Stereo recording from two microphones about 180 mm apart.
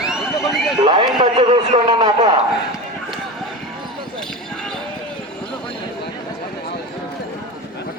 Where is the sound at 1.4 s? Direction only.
25° right (ahead or behind).